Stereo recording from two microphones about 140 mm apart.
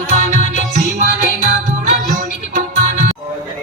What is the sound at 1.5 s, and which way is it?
Music, 80° right.